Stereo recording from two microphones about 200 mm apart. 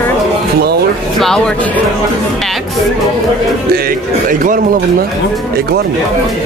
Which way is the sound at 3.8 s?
45° right (ahead or behind).